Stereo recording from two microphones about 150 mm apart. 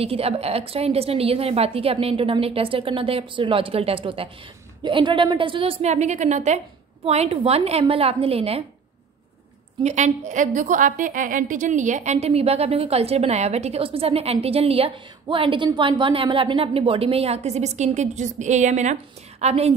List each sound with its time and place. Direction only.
0.0 s a woman's voice: 40° right (ahead or behind)
9.8 s a woman's voice: 50° right (ahead or behind)